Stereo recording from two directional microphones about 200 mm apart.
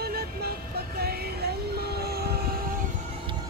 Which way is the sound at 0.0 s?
50° right (ahead or behind).